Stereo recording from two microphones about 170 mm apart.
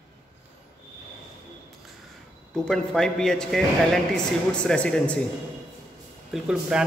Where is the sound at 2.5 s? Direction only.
5° left (ahead or behind).